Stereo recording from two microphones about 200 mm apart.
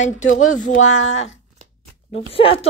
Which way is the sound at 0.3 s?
90° left.